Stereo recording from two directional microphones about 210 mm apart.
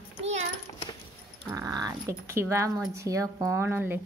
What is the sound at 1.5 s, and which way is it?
A woman's voice, 15° right (ahead or behind).